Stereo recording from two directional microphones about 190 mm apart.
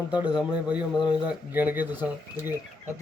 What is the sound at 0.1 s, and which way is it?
A man's voice, 5° right (ahead or behind).